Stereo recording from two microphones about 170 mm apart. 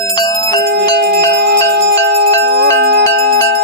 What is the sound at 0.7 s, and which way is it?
Music, 75° right (ahead or behind).